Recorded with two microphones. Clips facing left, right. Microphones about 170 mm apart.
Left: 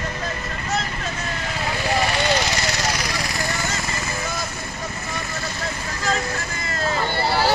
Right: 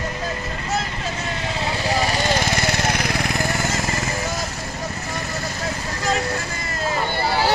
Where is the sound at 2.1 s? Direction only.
50° right (ahead or behind).